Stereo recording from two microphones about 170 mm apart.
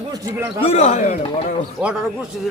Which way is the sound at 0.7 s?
40° left (ahead or behind).